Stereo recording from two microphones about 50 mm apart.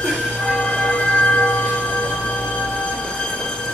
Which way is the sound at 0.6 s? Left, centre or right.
Left.